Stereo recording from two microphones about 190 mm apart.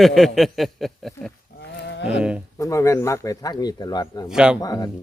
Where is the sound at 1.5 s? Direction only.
65° left (ahead or behind).